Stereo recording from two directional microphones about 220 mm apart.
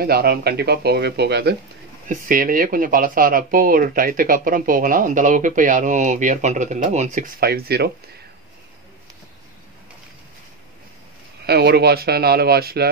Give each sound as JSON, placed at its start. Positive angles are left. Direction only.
{"t": 0.0, "sound": "speech", "side_deg": -45}
{"t": 11.4, "sound": "speech", "side_deg": -50}